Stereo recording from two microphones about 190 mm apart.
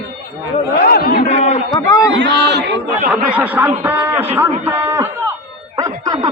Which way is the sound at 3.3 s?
10° right (ahead or behind).